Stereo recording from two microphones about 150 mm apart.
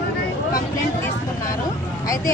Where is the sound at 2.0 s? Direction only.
20° left (ahead or behind).